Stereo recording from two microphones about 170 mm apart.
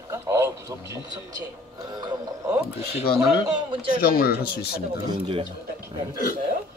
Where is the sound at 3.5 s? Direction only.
30° right (ahead or behind).